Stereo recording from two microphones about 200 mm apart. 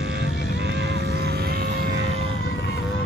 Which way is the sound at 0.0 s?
60° right (ahead or behind).